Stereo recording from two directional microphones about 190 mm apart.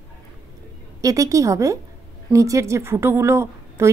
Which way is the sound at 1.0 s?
15° right (ahead or behind).